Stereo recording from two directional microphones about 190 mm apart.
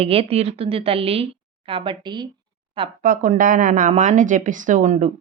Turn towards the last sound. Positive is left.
turn(degrees=-40)  # may be behind; listen again after turning